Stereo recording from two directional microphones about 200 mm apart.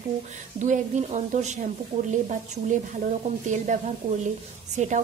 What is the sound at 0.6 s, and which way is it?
Speech, 40° right (ahead or behind).